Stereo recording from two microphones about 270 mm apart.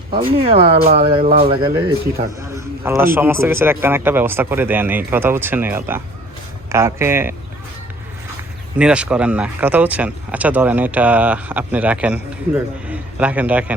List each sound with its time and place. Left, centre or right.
0.4 s a man's voice: right
8.8 s speech: centre